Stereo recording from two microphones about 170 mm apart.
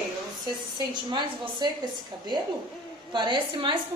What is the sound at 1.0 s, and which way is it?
A woman's voice, 25° right (ahead or behind).